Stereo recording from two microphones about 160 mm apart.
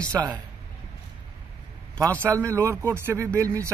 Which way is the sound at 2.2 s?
15° right (ahead or behind).